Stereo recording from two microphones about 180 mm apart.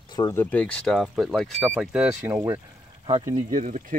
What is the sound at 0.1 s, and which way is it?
Speech, 15° left (ahead or behind).